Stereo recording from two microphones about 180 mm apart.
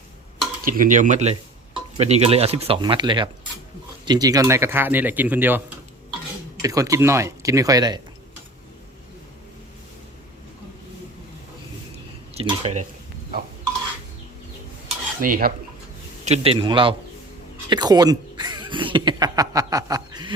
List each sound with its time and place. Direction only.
0.6 s speech: 50° right (ahead or behind); by 8.0 s 20° right (ahead or behind)
12.3 s speech: 35° right (ahead or behind)
15.2 s speech: 50° right (ahead or behind)
16.2 s speech: 35° right (ahead or behind)